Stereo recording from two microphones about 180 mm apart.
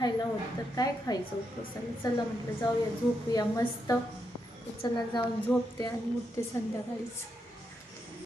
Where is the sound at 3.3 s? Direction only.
20° left (ahead or behind).